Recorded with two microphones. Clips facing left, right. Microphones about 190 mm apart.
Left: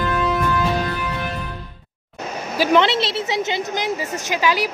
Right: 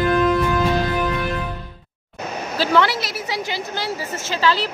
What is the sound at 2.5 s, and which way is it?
A woman's voice, 20° left (ahead or behind).